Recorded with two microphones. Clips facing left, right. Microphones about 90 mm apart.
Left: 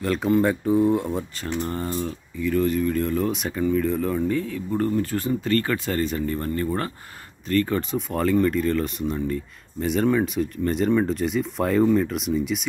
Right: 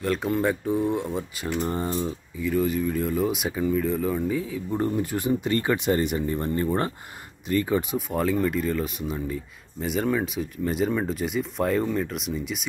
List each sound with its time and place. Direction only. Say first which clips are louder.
0.0 s speech: left 4 dB; centre (ahead or behind)
1.4 s speech: right 1 dB; 10° right (ahead or behind)
2.4 s speech: left 2 dB; 5° right (ahead or behind)